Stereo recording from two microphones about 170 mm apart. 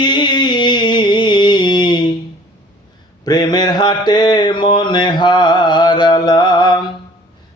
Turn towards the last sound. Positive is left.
turn(degrees=25)  # may be behind; listen again after turning